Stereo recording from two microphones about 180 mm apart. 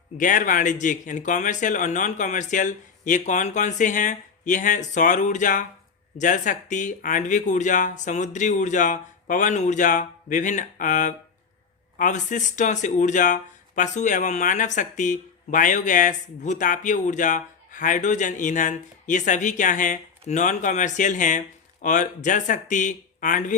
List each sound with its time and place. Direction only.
0.2 s speech: 45° left (ahead or behind)